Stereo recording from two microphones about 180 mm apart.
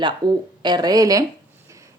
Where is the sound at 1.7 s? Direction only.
15° right (ahead or behind).